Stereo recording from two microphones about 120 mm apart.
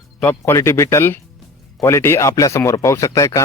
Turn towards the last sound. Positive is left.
turn(degrees=25)  # may be behind; listen again after turning